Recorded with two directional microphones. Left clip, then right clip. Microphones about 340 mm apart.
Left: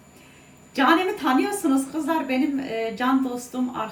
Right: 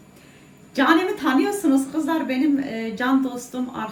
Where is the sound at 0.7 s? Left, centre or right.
Centre.